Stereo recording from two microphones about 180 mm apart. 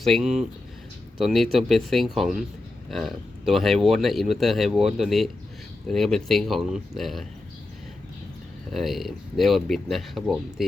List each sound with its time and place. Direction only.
0.0 s speech: centre (ahead or behind)
8.7 s speech: centre (ahead or behind)